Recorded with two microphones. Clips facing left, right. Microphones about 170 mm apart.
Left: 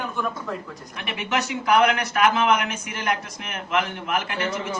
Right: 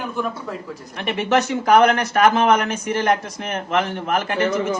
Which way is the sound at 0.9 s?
40° right (ahead or behind).